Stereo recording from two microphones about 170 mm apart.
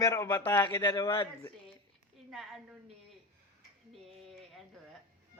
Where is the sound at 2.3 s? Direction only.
Centre (ahead or behind).